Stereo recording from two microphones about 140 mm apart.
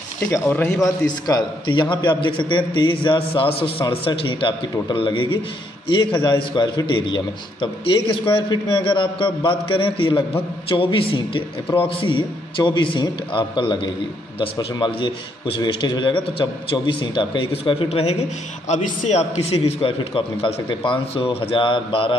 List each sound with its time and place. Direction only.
0.3 s speech: 15° left (ahead or behind)
0.7 s a man's voice: 30° left (ahead or behind)
18.7 s a man's voice: 55° left (ahead or behind); by 22.1 s 35° left (ahead or behind)